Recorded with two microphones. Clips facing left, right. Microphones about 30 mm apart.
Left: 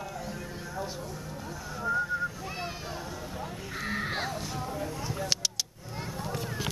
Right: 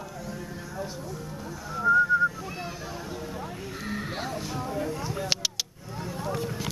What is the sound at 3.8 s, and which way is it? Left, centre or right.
Crow, centre.